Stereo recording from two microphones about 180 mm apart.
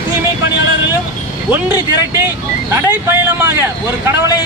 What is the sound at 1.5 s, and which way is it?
Speech, 10° right (ahead or behind).